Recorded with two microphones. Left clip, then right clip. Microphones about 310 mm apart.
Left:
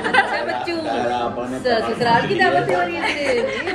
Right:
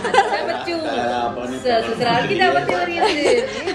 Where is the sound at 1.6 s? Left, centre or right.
Centre.